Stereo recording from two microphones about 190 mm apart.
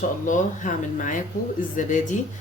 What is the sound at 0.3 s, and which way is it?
Speech, 40° left (ahead or behind).